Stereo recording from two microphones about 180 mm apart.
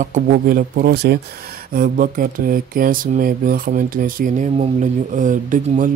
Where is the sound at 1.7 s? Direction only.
50° right (ahead or behind).